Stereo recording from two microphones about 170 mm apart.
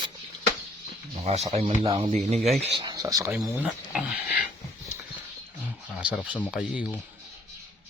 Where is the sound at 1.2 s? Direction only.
40° right (ahead or behind).